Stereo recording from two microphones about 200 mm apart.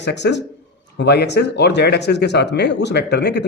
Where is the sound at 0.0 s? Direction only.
60° left (ahead or behind).